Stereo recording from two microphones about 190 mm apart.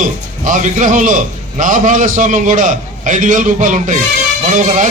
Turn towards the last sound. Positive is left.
turn(degrees=-45)  # may be behind; listen again after turning